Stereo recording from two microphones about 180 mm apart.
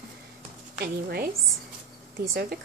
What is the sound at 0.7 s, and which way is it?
Speech, 50° right (ahead or behind).